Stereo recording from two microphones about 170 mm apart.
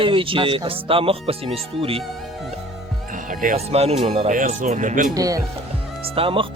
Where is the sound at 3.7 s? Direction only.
35° right (ahead or behind).